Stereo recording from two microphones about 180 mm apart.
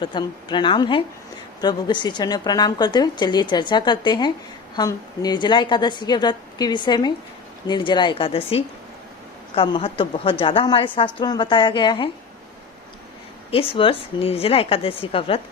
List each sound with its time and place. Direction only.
0.0 s a woman's voice: 25° left (ahead or behind)
13.5 s a woman's voice: 30° left (ahead or behind)